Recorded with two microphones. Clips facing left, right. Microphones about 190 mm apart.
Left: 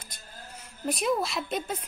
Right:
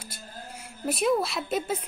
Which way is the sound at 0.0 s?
10° right (ahead or behind).